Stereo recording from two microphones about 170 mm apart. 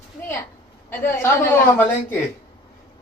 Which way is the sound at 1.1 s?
15° left (ahead or behind).